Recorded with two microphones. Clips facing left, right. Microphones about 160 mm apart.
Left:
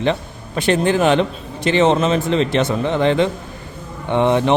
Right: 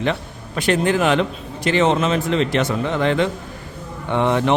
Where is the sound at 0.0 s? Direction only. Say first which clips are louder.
Left 3 dB; 25° left (ahead or behind).